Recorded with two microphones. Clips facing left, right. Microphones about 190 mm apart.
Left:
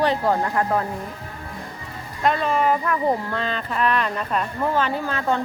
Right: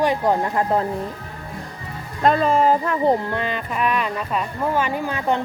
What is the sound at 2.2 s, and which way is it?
Speech, 35° right (ahead or behind).